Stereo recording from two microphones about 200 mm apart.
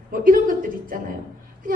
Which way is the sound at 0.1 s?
45° right (ahead or behind).